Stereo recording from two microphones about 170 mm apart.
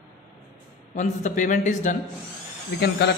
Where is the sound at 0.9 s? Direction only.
45° left (ahead or behind).